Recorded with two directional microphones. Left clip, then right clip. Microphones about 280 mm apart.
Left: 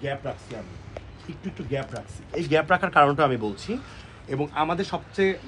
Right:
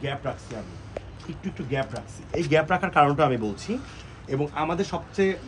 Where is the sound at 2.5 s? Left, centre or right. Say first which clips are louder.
Left 2 dB; centre.